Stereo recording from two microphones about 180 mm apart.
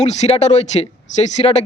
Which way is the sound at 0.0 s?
40° left (ahead or behind).